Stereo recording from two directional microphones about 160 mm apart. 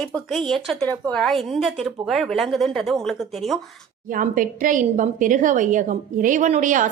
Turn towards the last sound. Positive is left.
turn(degrees=-55)  # may be behind; listen again after turning